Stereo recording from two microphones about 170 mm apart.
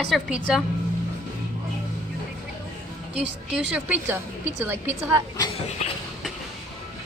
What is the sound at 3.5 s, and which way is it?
A woman's voice, 10° right (ahead or behind).